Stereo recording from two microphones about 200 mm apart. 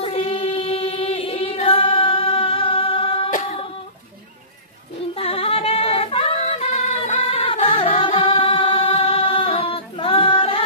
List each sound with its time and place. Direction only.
0.0 s choir: 30° left (ahead or behind)
3.3 s a sound: 40° left (ahead or behind)
5.1 s yodeling: 30° left (ahead or behind)